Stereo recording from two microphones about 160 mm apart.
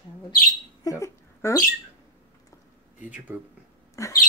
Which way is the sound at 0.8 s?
20° left (ahead or behind).